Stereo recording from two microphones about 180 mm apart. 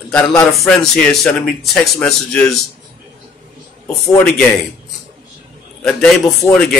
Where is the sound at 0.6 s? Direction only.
Centre (ahead or behind).